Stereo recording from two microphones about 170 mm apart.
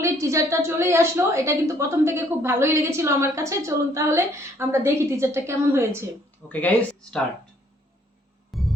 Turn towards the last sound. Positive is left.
turn(degrees=10)  # may be behind; listen again after turning